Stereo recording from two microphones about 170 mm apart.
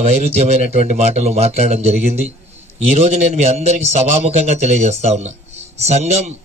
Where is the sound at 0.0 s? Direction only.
40° right (ahead or behind).